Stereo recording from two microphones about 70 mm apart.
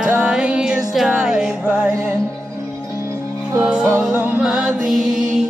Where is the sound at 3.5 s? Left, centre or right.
Centre.